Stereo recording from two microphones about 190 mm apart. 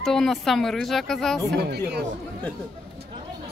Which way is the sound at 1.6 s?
60° right (ahead or behind).